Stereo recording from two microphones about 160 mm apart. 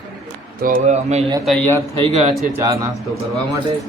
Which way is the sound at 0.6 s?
50° right (ahead or behind).